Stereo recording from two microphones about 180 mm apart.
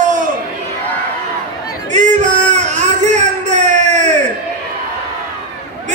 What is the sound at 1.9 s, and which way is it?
Music, 45° right (ahead or behind).